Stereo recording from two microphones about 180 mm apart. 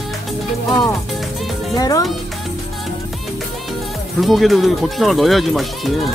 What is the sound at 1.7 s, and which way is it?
Speech, 20° left (ahead or behind).